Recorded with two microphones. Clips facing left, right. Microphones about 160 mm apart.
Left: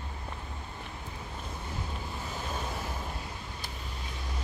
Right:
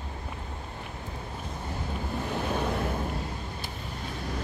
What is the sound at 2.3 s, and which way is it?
Waves, 60° right (ahead or behind).